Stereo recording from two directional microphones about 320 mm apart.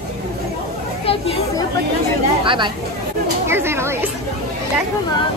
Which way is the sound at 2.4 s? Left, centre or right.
Centre.